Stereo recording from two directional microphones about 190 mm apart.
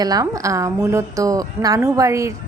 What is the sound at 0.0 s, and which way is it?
A woman's voice, 20° right (ahead or behind).